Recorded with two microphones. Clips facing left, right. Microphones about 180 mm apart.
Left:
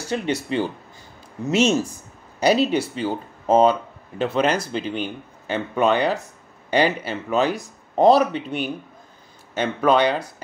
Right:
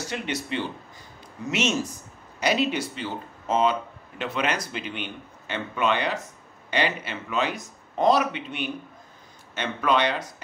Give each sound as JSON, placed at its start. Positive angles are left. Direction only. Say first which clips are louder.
{"t": 0.0, "sound": "speech", "louder": "left 6 dB", "side_deg": 30}